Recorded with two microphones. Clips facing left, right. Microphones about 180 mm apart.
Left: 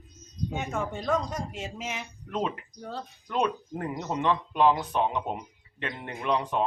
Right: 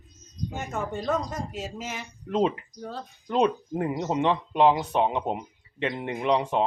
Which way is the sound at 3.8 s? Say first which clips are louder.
Right 6 dB; 10° right (ahead or behind).